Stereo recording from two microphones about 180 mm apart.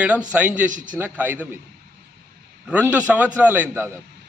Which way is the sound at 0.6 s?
45° right (ahead or behind).